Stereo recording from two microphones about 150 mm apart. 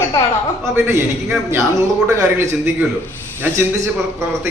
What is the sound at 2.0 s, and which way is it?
Speech, 15° right (ahead or behind).